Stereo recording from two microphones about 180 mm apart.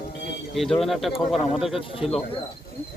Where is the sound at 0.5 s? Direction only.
Centre (ahead or behind).